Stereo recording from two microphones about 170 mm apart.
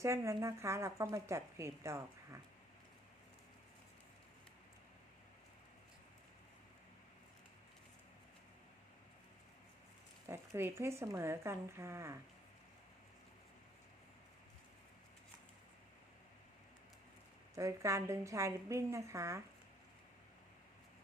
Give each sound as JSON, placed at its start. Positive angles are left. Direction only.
{"t": 0.0, "sound": "speech", "side_deg": -15}
{"t": 10.2, "sound": "speech", "side_deg": -15}
{"t": 17.5, "sound": "speech", "side_deg": -15}